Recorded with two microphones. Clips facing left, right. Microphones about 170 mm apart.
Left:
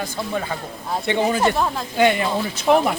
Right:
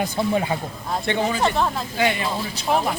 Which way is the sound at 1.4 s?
5° left (ahead or behind).